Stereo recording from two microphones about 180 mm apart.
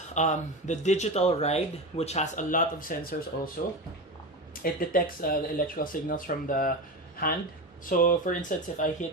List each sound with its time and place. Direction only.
0.1 s speech: 40° left (ahead or behind)
4.6 s speech: 50° left (ahead or behind)
7.9 s speech: 50° left (ahead or behind)